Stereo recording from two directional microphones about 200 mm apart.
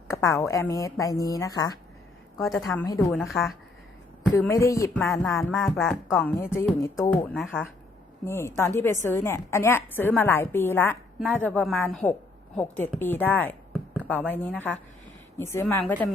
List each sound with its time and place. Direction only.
0.1 s a woman's voice: 15° left (ahead or behind)
2.8 s a woman's voice: 15° left (ahead or behind)
3.1 s speech: centre (ahead or behind)
4.4 s a woman's voice: 15° left (ahead or behind)
5.0 s a woman's voice: centre (ahead or behind)